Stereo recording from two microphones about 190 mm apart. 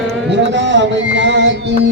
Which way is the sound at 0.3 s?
70° right (ahead or behind).